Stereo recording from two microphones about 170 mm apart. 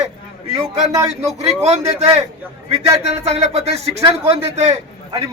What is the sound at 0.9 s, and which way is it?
Speech, 15° right (ahead or behind).